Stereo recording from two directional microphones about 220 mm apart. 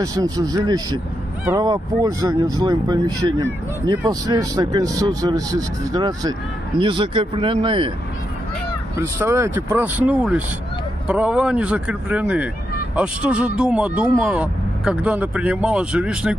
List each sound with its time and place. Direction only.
0.0 s speech: 15° right (ahead or behind)
8.9 s speech: 10° right (ahead or behind)